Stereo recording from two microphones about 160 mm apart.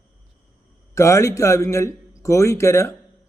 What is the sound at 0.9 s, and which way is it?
A man's voice, 20° left (ahead or behind).